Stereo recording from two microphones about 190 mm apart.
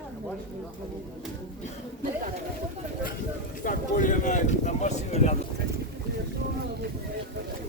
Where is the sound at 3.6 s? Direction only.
45° left (ahead or behind).